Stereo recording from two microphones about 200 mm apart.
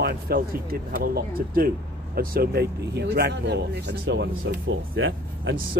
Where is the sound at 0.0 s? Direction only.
50° right (ahead or behind).